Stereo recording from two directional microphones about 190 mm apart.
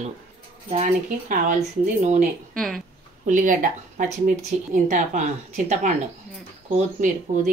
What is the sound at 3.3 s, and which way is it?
Speech, 45° right (ahead or behind).